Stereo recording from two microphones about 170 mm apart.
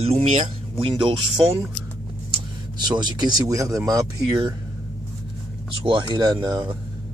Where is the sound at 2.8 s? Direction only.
25° right (ahead or behind).